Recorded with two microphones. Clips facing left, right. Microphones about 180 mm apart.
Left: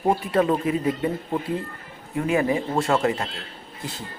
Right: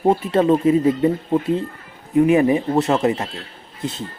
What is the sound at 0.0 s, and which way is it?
A man's voice, 25° right (ahead or behind).